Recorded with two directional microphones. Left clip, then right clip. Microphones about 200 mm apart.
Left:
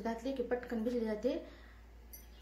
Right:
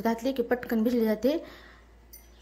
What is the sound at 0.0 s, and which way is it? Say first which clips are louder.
A woman's voice: right 10 dB; 50° right (ahead or behind).